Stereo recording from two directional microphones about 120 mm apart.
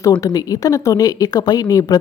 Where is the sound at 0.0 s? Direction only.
30° left (ahead or behind).